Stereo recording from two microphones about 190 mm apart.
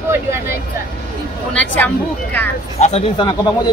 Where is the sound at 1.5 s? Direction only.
5° left (ahead or behind).